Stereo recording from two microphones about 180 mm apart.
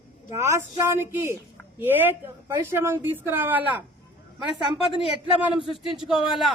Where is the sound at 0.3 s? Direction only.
15° right (ahead or behind).